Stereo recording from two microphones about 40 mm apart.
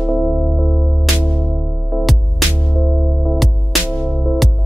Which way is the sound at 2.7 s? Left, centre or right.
Centre.